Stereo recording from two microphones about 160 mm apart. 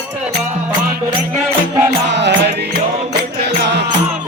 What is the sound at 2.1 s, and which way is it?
Music, 90° right.